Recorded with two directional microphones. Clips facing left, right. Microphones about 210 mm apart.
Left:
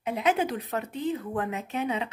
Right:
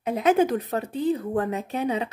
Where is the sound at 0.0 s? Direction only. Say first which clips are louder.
Right 6 dB; 40° right (ahead or behind).